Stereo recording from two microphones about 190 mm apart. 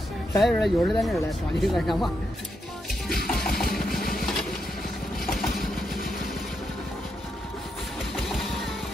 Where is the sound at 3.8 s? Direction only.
50° left (ahead or behind).